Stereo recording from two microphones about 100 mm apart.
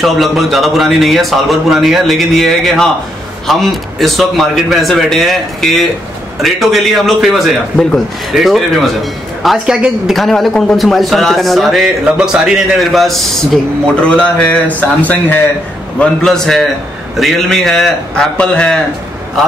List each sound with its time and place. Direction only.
0.0 s speech: centre (ahead or behind)
14.0 s speech: 10° left (ahead or behind)
16.0 s speech: 5° left (ahead or behind)